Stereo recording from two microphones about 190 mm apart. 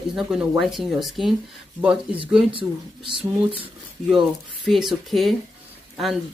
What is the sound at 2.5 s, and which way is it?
Speech, 25° right (ahead or behind).